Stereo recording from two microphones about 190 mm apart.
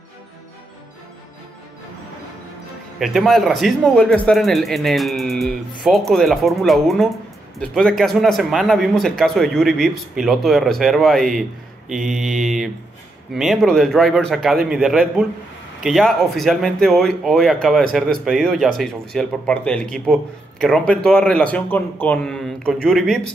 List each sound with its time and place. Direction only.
3.0 s speech: centre (ahead or behind)